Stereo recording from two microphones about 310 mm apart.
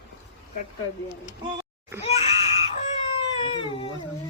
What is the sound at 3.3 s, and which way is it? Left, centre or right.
Baby cry, centre.